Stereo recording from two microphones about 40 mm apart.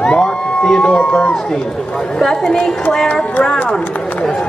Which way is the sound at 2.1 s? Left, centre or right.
Centre.